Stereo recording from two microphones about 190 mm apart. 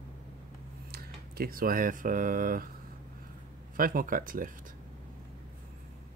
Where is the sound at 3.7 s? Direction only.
50° right (ahead or behind).